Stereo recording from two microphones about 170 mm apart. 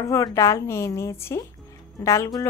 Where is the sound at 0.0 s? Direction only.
20° left (ahead or behind).